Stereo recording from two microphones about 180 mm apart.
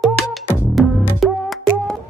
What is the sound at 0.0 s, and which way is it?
Music, centre (ahead or behind).